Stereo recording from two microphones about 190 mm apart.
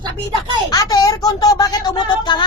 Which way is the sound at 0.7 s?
20° left (ahead or behind).